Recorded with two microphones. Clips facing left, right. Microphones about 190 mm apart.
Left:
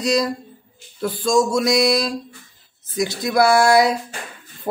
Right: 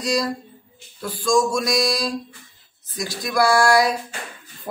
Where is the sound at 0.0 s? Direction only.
25° left (ahead or behind).